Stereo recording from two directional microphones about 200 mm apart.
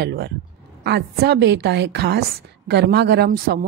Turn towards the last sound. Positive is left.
turn(degrees=-50)  # may be behind; listen again after turning